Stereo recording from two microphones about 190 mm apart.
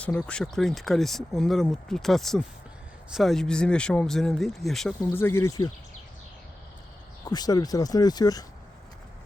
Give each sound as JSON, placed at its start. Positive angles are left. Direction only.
{"t": 0.0, "sound": "speech", "side_deg": 5}
{"t": 7.3, "sound": "speech", "side_deg": 20}